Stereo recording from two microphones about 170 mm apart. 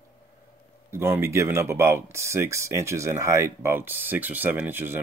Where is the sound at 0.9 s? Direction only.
15° right (ahead or behind).